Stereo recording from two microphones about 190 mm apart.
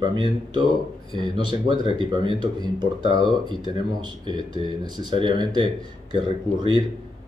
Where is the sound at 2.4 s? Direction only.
20° right (ahead or behind).